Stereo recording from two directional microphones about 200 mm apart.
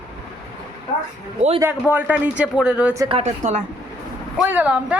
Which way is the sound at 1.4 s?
30° right (ahead or behind).